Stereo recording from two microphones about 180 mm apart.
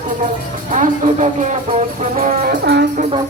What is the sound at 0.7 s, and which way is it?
Speech, 40° right (ahead or behind).